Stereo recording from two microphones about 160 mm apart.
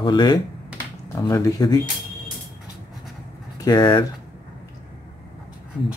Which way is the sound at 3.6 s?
25° left (ahead or behind).